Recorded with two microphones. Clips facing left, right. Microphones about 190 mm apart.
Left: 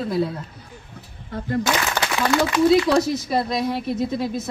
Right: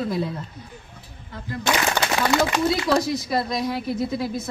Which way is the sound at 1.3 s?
50° left (ahead or behind).